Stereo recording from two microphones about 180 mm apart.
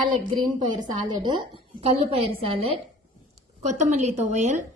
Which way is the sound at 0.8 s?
25° right (ahead or behind).